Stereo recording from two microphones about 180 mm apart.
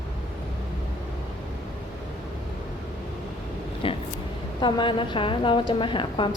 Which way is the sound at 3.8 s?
30° left (ahead or behind).